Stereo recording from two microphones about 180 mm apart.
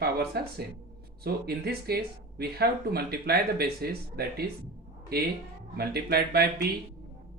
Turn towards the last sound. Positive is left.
turn(degrees=-60)  # may be behind; listen again after turning